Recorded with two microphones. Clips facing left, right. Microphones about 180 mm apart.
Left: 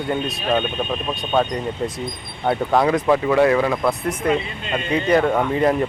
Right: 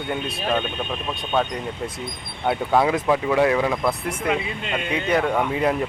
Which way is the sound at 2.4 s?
5° right (ahead or behind).